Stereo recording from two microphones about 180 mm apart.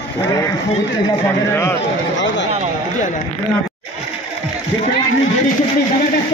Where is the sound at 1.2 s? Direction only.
15° left (ahead or behind).